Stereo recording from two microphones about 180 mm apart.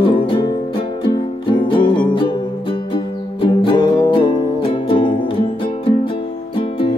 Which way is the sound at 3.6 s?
25° left (ahead or behind).